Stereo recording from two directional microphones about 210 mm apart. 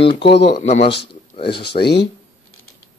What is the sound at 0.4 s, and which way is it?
Speech, 30° left (ahead or behind).